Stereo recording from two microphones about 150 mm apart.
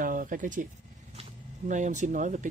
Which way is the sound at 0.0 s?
65° right (ahead or behind).